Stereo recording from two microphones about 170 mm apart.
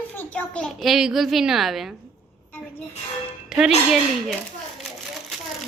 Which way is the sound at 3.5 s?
Centre (ahead or behind).